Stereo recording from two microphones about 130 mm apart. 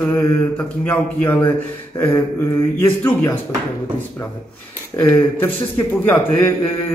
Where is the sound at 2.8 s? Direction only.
20° left (ahead or behind).